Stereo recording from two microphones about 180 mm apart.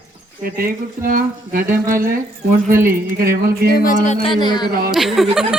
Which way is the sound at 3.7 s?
45° left (ahead or behind).